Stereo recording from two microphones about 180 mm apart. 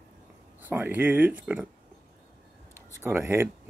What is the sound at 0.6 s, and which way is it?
Speech, 10° right (ahead or behind).